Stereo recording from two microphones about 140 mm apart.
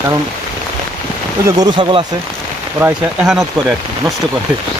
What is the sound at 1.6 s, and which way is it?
Speech, 40° right (ahead or behind).